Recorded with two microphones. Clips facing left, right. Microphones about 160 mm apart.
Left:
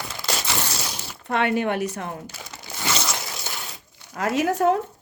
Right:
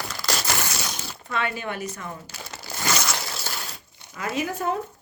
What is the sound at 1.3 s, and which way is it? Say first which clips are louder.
Speech: left 7 dB; 60° left (ahead or behind).